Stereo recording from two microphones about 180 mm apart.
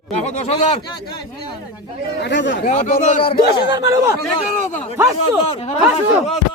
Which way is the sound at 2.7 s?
45° left (ahead or behind).